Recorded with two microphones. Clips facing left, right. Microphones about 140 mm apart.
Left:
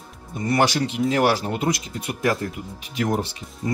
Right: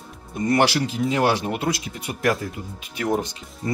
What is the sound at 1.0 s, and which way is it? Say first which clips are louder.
Speech: left 2 dB; 10° left (ahead or behind).